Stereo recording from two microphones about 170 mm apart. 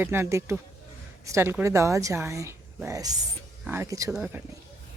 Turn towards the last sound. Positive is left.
turn(degrees=-10)  # may be behind; listen again after turning